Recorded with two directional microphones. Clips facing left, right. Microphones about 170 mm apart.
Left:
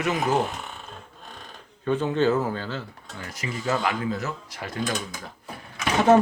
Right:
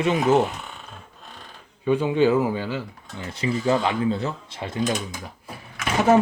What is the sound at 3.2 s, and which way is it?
Speech, 25° right (ahead or behind).